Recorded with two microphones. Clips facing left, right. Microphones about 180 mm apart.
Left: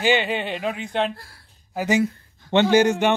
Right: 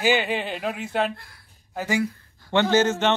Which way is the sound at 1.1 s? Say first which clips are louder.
Even; 35° left (ahead or behind).